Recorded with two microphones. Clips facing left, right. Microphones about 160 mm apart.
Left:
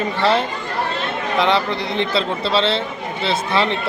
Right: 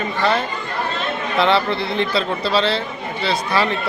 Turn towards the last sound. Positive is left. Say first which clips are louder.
# even
turn(degrees=25)  # may be behind; listen again after turning